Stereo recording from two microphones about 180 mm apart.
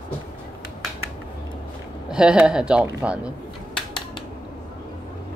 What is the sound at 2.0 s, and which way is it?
A man's voice, 5° right (ahead or behind).